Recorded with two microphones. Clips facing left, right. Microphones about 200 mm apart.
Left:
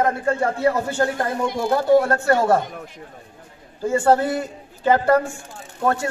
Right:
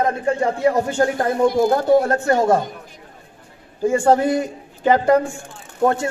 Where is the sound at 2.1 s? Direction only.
15° right (ahead or behind).